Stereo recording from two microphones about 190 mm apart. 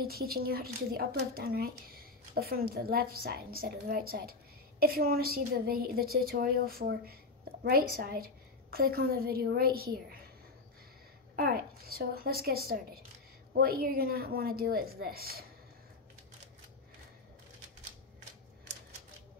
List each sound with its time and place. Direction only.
0.0 s a woman's voice: 55° right (ahead or behind)
11.3 s speech: 55° right (ahead or behind)